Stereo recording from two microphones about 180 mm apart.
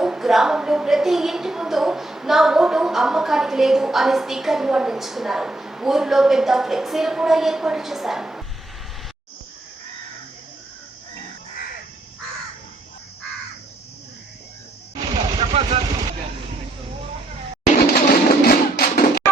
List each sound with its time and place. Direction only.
0.0 s a woman's voice: centre (ahead or behind)
15.4 s vehicle: 35° right (ahead or behind)
17.7 s a sound: 55° left (ahead or behind)